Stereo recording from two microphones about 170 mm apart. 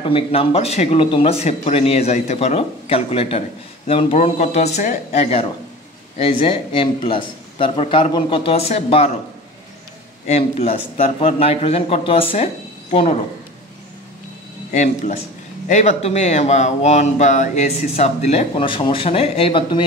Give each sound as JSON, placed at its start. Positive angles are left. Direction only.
{"t": 0.0, "sound": "speech", "side_deg": 35}
{"t": 10.2, "sound": "speech", "side_deg": 40}
{"t": 14.7, "sound": "speech", "side_deg": 45}